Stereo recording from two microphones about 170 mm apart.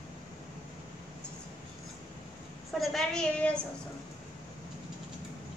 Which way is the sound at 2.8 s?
Centre (ahead or behind).